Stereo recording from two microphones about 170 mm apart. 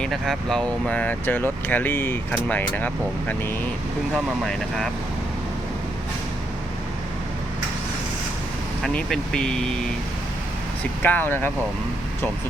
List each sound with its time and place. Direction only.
0.0 s speech: centre (ahead or behind)
8.8 s speech: 5° left (ahead or behind)
11.0 s speech: 10° left (ahead or behind)